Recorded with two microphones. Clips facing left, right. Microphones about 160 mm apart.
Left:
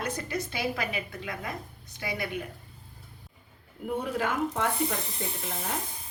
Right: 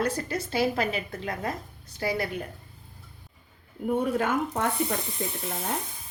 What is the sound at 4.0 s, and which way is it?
Speech, 45° right (ahead or behind).